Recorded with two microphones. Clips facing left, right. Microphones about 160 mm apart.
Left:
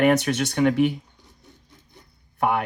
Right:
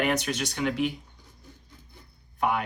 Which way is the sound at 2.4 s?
60° left (ahead or behind).